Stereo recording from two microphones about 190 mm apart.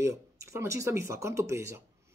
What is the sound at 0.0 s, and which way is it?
Speech, 15° right (ahead or behind).